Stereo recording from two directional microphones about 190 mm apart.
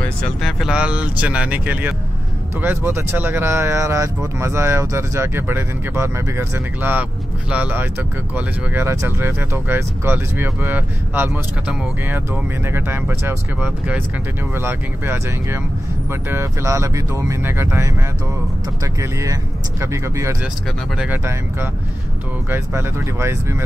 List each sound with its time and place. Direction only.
0.0 s speech: 5° left (ahead or behind); by 17.9 s 15° right (ahead or behind)
18.9 s speech: 15° right (ahead or behind)